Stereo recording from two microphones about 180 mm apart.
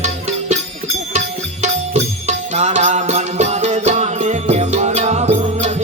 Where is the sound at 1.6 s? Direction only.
40° right (ahead or behind).